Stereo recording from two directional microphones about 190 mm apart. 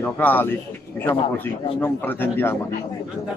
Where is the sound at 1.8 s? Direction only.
10° left (ahead or behind).